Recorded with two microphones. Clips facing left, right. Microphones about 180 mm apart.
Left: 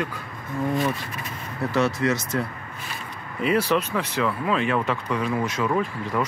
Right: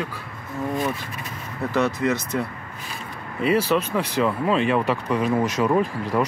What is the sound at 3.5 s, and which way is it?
Speech, 10° right (ahead or behind).